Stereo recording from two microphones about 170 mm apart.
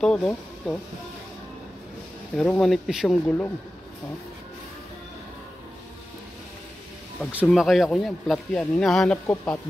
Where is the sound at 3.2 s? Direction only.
10° left (ahead or behind).